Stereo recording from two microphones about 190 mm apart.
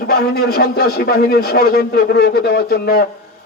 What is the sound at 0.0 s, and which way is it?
A man's voice, 55° left (ahead or behind).